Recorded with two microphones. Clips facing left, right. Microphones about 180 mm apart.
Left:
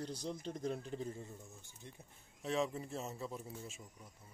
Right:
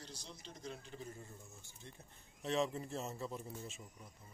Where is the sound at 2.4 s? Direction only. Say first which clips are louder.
Even; 5° left (ahead or behind).